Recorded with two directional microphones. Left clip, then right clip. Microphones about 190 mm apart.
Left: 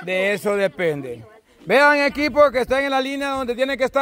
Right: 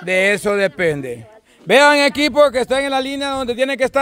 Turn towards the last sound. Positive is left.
turn(degrees=-20)  # may be behind; listen again after turning